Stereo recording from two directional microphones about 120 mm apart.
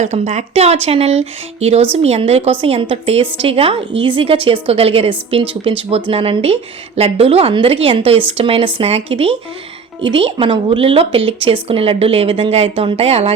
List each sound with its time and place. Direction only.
0.0 s speech: 75° right (ahead or behind)